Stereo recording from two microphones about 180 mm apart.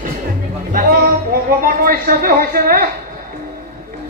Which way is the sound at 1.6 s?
55° right (ahead or behind).